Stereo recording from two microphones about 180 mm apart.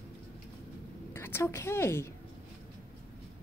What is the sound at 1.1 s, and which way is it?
Speech, 15° left (ahead or behind).